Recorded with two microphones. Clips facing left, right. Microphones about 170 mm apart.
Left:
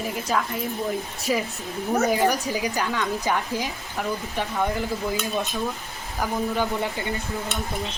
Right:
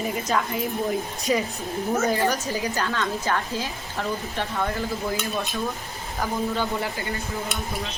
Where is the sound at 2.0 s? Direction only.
10° left (ahead or behind).